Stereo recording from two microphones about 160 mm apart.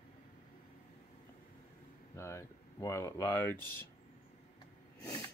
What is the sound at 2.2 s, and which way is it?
Speech, 20° left (ahead or behind).